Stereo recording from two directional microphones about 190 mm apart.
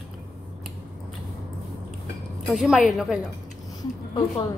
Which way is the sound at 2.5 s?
Centre (ahead or behind).